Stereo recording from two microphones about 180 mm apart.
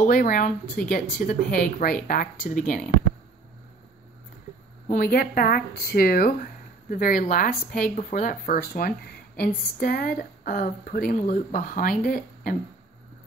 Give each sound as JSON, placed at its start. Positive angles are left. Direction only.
{"t": 0.0, "sound": "speech", "side_deg": 50}
{"t": 4.8, "sound": "speech", "side_deg": 50}